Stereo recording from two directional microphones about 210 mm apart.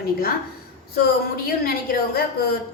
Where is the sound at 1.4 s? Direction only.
45° left (ahead or behind).